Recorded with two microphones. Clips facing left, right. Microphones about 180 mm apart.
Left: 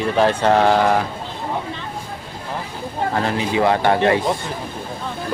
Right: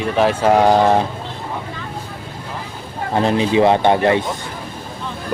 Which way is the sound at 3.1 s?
20° right (ahead or behind).